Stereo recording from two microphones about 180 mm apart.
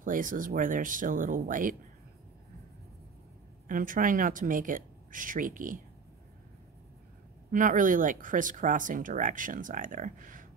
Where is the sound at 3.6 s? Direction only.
50° right (ahead or behind).